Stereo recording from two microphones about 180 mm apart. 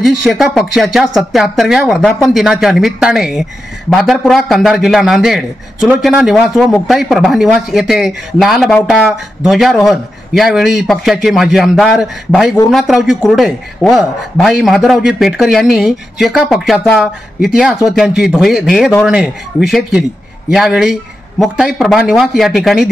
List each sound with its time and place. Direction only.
0.0 s a man's voice: centre (ahead or behind)